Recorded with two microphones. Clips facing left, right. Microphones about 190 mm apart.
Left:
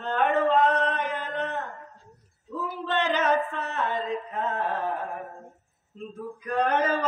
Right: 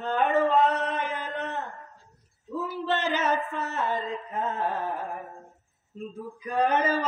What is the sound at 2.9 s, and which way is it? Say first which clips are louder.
Music: left 2 dB; 5° right (ahead or behind).